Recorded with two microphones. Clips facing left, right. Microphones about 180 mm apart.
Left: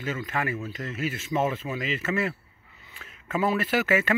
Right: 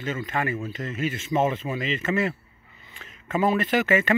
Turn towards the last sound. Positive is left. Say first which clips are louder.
# right 2 dB
turn(degrees=5)  # may be behind; listen again after turning